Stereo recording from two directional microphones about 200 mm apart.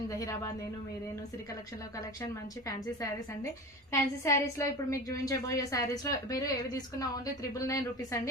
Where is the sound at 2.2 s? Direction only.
15° left (ahead or behind).